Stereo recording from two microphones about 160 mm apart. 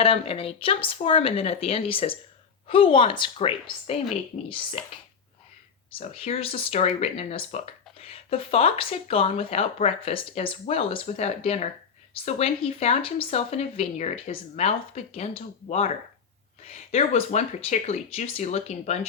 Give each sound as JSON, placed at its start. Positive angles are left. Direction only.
{"t": 0.0, "sound": "speech", "side_deg": 35}
{"t": 5.9, "sound": "speech", "side_deg": 40}